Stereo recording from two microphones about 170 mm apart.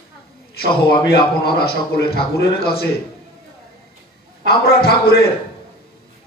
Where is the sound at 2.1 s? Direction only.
65° left (ahead or behind).